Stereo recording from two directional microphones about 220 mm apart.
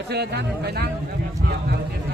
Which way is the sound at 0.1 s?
50° right (ahead or behind).